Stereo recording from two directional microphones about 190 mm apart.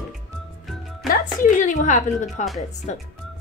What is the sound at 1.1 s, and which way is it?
A woman's voice, 45° left (ahead or behind).